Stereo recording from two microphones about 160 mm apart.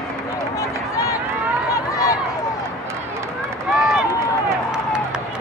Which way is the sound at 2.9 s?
15° right (ahead or behind).